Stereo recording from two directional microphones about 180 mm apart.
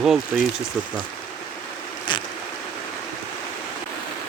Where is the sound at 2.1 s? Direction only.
25° left (ahead or behind).